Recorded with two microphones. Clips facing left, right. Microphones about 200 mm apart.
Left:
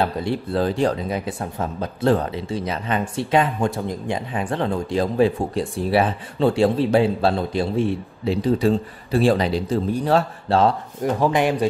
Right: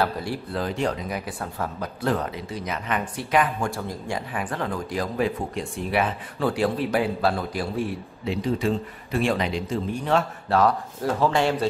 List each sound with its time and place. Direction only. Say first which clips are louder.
0.0 s speech: left 4 dB; 25° left (ahead or behind)
11.0 s speech: left 3 dB; 15° left (ahead or behind)